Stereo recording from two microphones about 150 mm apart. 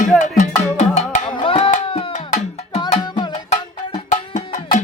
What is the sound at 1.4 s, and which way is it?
Tabla, 35° left (ahead or behind).